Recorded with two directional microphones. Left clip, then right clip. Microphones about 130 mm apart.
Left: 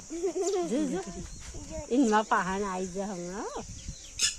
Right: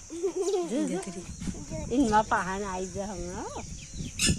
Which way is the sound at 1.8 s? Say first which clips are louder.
Right 1 dB; 45° left (ahead or behind).